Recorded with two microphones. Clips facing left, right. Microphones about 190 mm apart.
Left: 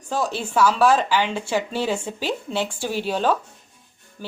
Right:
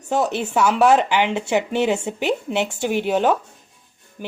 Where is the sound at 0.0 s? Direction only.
20° right (ahead or behind).